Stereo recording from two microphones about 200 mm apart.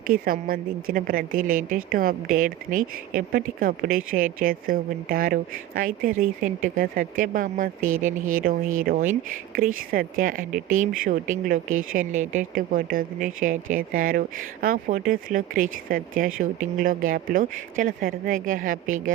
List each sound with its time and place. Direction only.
0.1 s a woman's voice: 45° right (ahead or behind)